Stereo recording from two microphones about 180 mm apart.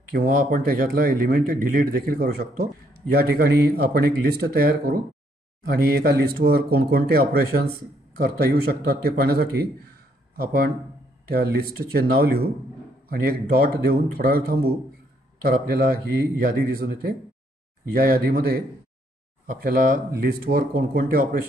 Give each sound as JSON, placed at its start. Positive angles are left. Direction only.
{"t": 0.1, "sound": "speech", "side_deg": -55}